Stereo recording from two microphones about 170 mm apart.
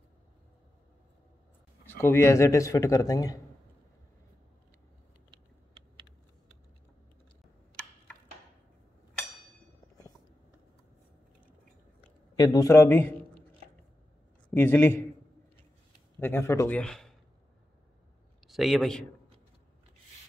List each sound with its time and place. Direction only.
1.9 s speech: 15° left (ahead or behind)
5.3 s typing: 25° right (ahead or behind)
12.4 s speech: 20° left (ahead or behind)
14.5 s a man's voice: 15° left (ahead or behind)
16.2 s a man's voice: 15° left (ahead or behind)
18.5 s a man's voice: centre (ahead or behind)